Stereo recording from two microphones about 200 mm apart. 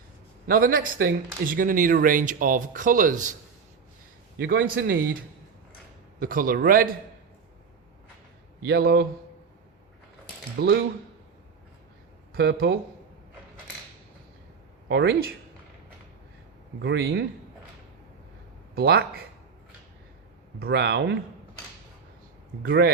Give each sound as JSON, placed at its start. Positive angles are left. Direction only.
{"t": 0.4, "sound": "speech", "side_deg": -45}
{"t": 4.4, "sound": "speech", "side_deg": -50}
{"t": 6.1, "sound": "speech", "side_deg": -45}
{"t": 8.6, "sound": "speech", "side_deg": -50}
{"t": 10.6, "sound": "speech", "side_deg": -50}
{"t": 12.3, "sound": "speech", "side_deg": -50}
{"t": 14.8, "sound": "speech", "side_deg": -60}
{"t": 16.8, "sound": "speech", "side_deg": -60}
{"t": 18.7, "sound": "speech", "side_deg": -55}
{"t": 20.6, "sound": "speech", "side_deg": -55}
{"t": 22.6, "sound": "speech", "side_deg": -50}